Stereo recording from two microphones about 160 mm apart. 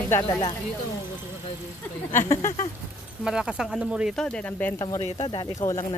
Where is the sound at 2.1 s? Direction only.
15° left (ahead or behind).